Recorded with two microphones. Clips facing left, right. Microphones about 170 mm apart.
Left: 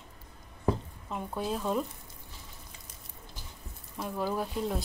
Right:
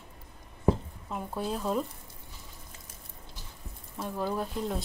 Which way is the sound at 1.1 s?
Centre (ahead or behind).